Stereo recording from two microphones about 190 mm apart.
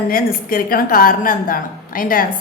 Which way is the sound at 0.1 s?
50° left (ahead or behind).